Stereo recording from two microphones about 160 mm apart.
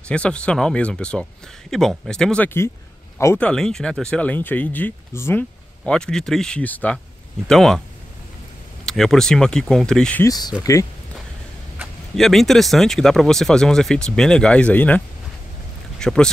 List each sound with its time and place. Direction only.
0.1 s speech: 5° left (ahead or behind)
8.8 s speech: centre (ahead or behind)
10.2 s speech: 25° left (ahead or behind)
11.8 s speech: centre (ahead or behind)
16.0 s speech: 5° left (ahead or behind)